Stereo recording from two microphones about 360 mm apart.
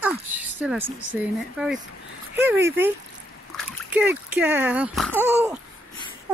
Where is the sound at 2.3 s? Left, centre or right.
Centre.